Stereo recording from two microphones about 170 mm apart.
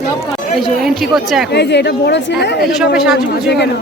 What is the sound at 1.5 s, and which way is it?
Speech, 80° left.